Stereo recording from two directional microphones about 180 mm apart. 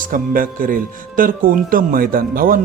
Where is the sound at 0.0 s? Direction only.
50° right (ahead or behind).